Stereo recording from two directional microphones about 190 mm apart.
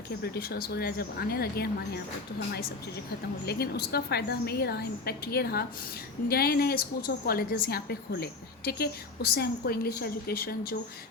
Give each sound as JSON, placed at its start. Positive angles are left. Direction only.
{"t": 0.2, "sound": "a woman's voice", "side_deg": 55}
{"t": 3.4, "sound": "a woman's voice", "side_deg": 55}